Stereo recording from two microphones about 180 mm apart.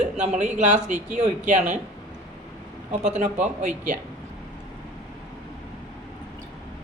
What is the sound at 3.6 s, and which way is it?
Speech, 45° right (ahead or behind).